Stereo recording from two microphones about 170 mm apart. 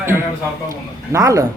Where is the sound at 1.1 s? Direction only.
20° right (ahead or behind).